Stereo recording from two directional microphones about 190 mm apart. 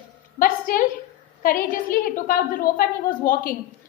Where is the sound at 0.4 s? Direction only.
45° left (ahead or behind).